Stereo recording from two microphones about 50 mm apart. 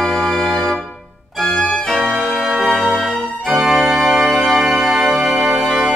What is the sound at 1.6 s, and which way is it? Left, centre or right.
Music, centre.